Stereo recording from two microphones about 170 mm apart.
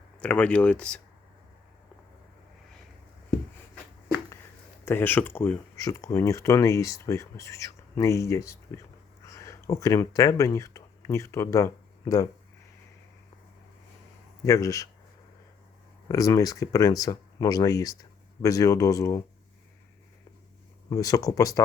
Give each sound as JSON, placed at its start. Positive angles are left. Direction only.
{"t": 0.2, "sound": "speech", "side_deg": 5}
{"t": 4.9, "sound": "speech", "side_deg": 10}
{"t": 14.4, "sound": "speech", "side_deg": 20}
{"t": 16.0, "sound": "speech", "side_deg": 20}
{"t": 20.9, "sound": "speech", "side_deg": 20}